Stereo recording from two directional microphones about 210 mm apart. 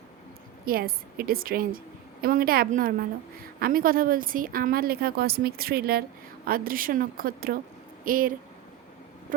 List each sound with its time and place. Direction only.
0.6 s a woman's voice: 45° right (ahead or behind)